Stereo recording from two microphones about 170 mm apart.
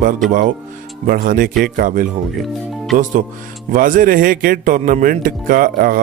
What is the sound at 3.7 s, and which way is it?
A man's voice, 50° right (ahead or behind).